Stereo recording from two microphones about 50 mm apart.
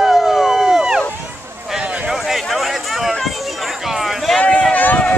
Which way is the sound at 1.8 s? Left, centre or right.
Right.